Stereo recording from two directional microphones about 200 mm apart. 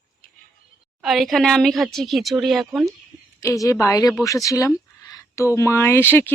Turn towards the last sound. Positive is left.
turn(degrees=10)  # may be behind; listen again after turning